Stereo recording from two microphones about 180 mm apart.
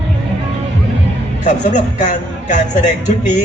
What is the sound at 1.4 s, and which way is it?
A man's voice, 40° left (ahead or behind).